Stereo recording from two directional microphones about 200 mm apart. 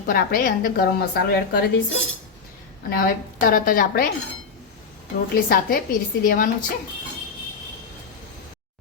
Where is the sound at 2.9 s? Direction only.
45° left (ahead or behind).